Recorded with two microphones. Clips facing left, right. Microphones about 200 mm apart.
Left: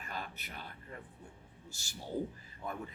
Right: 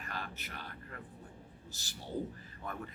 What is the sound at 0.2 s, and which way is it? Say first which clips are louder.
Speech: even; 15° left (ahead or behind).